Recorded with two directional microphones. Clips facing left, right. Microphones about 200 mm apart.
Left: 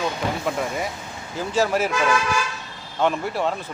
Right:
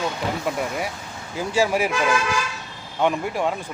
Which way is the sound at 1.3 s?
10° right (ahead or behind).